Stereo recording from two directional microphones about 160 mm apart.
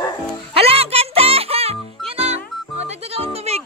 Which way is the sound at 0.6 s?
40° right (ahead or behind).